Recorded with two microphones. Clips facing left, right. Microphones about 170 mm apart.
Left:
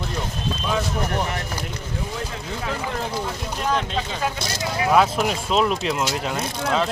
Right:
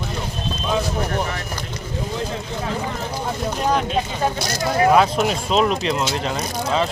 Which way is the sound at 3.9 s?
45° right (ahead or behind).